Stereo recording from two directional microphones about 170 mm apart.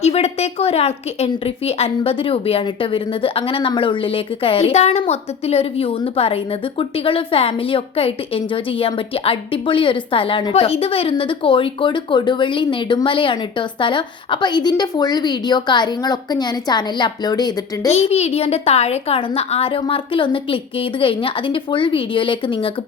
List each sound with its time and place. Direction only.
0.0 s a woman's voice: 40° left (ahead or behind); by 17.9 s 25° left (ahead or behind)
17.9 s a woman's voice: 40° left (ahead or behind)